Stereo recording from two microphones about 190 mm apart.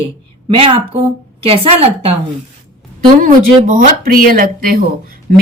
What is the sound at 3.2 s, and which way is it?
Speech, 45° right (ahead or behind).